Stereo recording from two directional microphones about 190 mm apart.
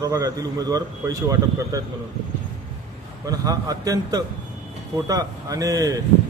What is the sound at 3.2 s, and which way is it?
Speech, 20° right (ahead or behind).